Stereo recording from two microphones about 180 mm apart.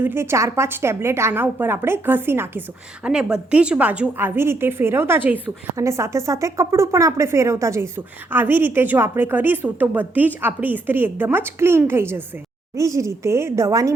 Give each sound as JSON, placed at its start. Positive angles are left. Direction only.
{"t": 0.0, "sound": "a woman's voice", "side_deg": -15}